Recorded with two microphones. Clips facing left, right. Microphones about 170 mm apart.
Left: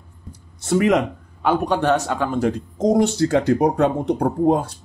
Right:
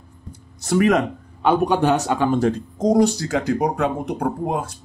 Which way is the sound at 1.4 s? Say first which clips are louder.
Right 2 dB; 10° right (ahead or behind).